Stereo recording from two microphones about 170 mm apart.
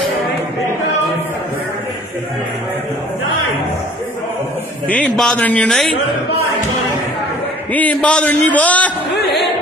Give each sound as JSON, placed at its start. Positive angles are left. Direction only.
{"t": 4.8, "sound": "a man's voice", "side_deg": 5}
{"t": 7.7, "sound": "a man's voice", "side_deg": 10}
{"t": 9.1, "sound": "a sound", "side_deg": 80}